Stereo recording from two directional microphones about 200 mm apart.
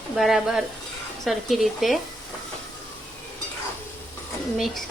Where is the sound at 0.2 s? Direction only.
Centre (ahead or behind).